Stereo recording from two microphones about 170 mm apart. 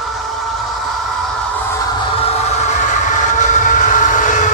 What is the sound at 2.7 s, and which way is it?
Train, 45° left (ahead or behind).